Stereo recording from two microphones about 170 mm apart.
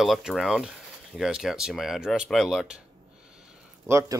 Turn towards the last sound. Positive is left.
turn(degrees=-15)  # may be behind; listen again after turning